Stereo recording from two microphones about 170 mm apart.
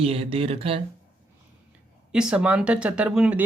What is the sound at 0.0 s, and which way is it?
Speech, 35° right (ahead or behind).